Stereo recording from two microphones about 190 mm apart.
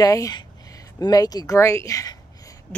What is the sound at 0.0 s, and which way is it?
Speech, 20° left (ahead or behind).